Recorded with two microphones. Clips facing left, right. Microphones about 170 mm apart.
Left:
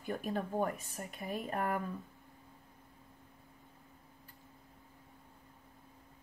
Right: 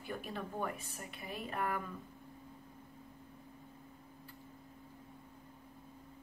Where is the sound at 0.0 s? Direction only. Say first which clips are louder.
Left 5 dB; 45° left (ahead or behind).